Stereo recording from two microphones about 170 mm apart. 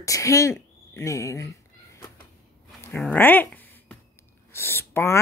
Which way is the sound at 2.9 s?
5° left (ahead or behind).